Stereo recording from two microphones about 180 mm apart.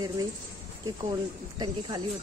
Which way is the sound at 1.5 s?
20° right (ahead or behind).